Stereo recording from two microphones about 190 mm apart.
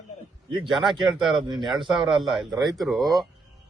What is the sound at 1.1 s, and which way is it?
A man's voice, centre (ahead or behind).